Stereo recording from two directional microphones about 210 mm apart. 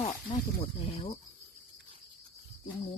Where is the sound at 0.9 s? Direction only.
30° left (ahead or behind).